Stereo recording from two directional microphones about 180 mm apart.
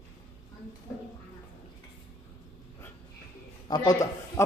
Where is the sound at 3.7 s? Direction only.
20° left (ahead or behind).